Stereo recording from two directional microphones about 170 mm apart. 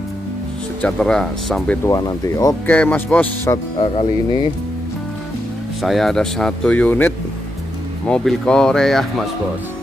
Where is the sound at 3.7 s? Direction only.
25° left (ahead or behind).